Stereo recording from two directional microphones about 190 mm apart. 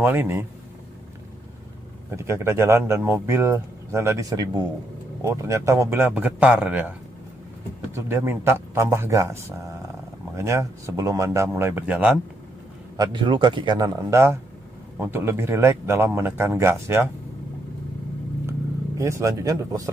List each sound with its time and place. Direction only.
0.0 s speech: 10° right (ahead or behind)
2.0 s speech: 15° right (ahead or behind)
7.9 s speech: 10° right (ahead or behind)
12.9 s speech: 25° right (ahead or behind)
18.5 s vehicle: 15° right (ahead or behind)